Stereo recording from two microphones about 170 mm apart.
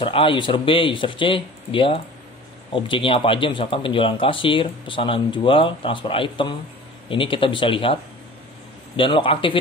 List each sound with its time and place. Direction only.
0.0 s speech: 30° left (ahead or behind)